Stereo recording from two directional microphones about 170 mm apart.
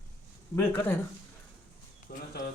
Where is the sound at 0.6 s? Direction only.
10° left (ahead or behind).